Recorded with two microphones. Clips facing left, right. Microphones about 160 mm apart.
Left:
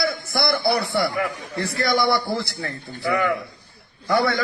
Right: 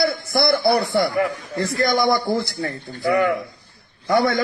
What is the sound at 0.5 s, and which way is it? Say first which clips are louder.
A man's voice: right 3 dB; 25° right (ahead or behind).